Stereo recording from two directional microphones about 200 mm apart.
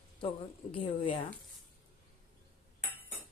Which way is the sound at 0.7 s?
25° left (ahead or behind).